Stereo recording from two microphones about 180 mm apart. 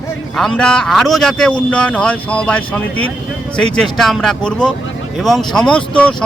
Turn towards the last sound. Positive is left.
turn(degrees=5)  # may be behind; listen again after turning